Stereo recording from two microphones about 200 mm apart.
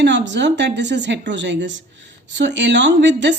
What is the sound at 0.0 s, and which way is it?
A woman's voice, 60° right (ahead or behind).